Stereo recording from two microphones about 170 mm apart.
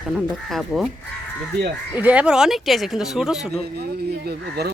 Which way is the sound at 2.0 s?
5° right (ahead or behind).